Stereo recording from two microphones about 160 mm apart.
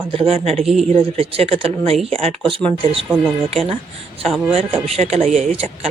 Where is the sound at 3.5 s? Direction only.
35° right (ahead or behind).